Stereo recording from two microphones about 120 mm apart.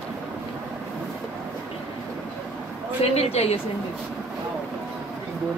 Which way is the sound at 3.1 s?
55° left (ahead or behind).